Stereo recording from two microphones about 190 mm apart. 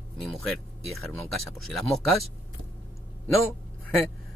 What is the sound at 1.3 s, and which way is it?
Speech, centre (ahead or behind).